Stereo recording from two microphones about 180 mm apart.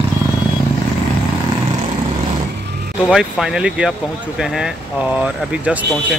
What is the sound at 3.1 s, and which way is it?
Speech, centre (ahead or behind).